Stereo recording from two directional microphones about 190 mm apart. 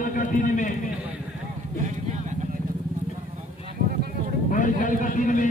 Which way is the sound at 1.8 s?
40° right (ahead or behind).